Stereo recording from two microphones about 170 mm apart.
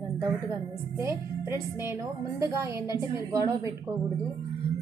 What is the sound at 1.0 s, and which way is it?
A woman's voice, 15° right (ahead or behind).